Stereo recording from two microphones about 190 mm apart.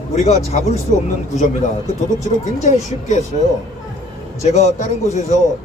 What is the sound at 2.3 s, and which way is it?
Speech, 40° left (ahead or behind).